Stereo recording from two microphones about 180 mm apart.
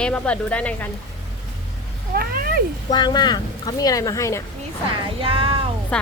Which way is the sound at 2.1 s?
55° right (ahead or behind).